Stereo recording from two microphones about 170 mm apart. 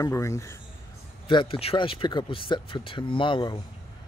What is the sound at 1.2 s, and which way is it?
Speech, 30° left (ahead or behind).